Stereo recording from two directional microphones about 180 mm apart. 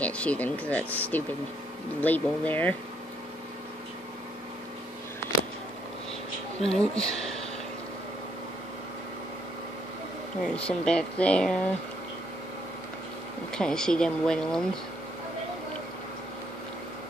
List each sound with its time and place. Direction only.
0.0 s speech: 10° left (ahead or behind)
6.6 s speech: 5° left (ahead or behind)
10.4 s speech: 5° left (ahead or behind)
13.5 s speech: 5° left (ahead or behind)